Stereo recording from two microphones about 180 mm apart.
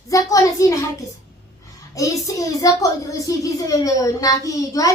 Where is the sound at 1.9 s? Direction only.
20° left (ahead or behind).